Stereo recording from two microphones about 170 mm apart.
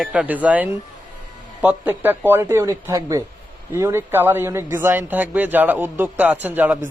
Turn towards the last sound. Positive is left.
turn(degrees=-10)  # may be behind; listen again after turning